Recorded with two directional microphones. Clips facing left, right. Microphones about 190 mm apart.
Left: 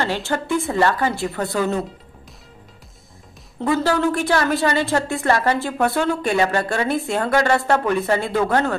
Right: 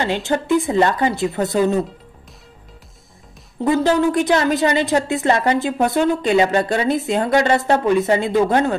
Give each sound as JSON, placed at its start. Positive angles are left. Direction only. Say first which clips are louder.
{"t": 0.0, "sound": "a woman's voice", "louder": "right 3 dB", "side_deg": -15}
{"t": 3.6, "sound": "a woman's voice", "louder": "right 3 dB", "side_deg": -20}